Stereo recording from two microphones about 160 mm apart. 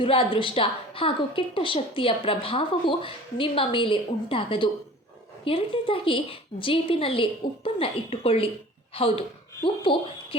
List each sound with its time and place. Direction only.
0.0 s a woman's voice: 35° left (ahead or behind)